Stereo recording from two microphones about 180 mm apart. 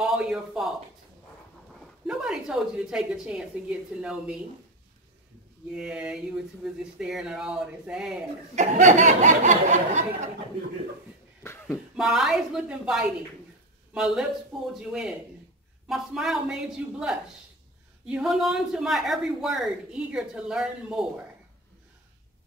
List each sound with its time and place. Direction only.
0.0 s a man's voice: 5° right (ahead or behind)
2.0 s a woman's voice: 5° right (ahead or behind)
5.7 s a woman's voice: 5° right (ahead or behind)
8.5 s a sound: 40° right (ahead or behind)
11.4 s a sound: 10° left (ahead or behind)
12.0 s a woman's voice: centre (ahead or behind)